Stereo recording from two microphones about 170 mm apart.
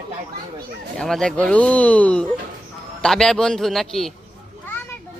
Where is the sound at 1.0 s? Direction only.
5° left (ahead or behind).